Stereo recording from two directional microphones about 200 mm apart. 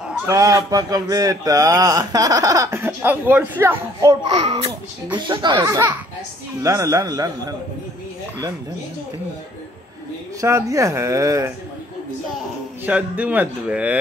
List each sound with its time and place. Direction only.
0.3 s speech: 15° right (ahead or behind)
4.3 s speech: 30° right (ahead or behind)
4.6 s speech: 15° right (ahead or behind)
10.4 s speech: 15° right (ahead or behind)
12.8 s speech: 5° right (ahead or behind)